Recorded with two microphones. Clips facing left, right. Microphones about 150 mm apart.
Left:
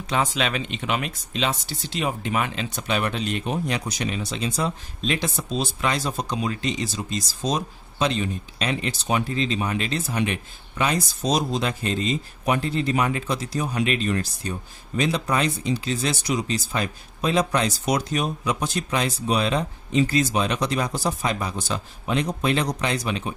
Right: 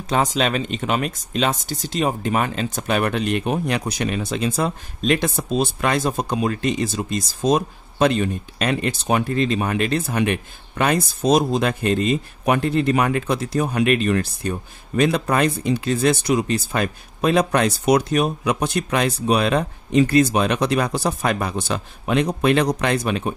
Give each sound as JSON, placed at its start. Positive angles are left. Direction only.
{"t": 0.1, "sound": "speech", "side_deg": -40}